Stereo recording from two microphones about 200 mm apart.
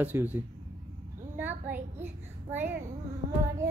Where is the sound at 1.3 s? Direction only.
10° right (ahead or behind).